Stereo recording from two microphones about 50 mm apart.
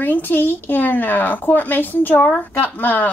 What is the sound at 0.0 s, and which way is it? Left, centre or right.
A woman's voice, left.